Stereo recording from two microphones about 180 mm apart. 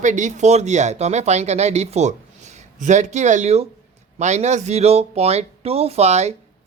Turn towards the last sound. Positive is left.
turn(degrees=-35)  # may be behind; listen again after turning